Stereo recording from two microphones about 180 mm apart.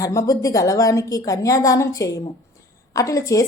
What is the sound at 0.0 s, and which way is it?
A woman's voice, 20° left (ahead or behind).